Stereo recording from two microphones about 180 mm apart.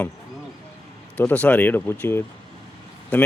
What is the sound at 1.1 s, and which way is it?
Speech, 10° left (ahead or behind).